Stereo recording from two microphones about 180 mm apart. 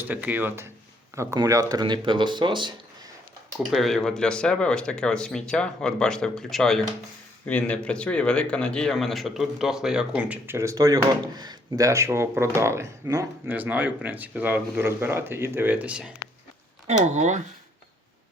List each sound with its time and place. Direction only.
0.0 s speech: 10° right (ahead or behind); by 2.7 s 25° right (ahead or behind)
3.7 s speech: centre (ahead or behind)
16.8 s speech: 40° right (ahead or behind)